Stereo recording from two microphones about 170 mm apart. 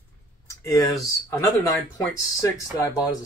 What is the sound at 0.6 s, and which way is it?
Speech, 20° left (ahead or behind).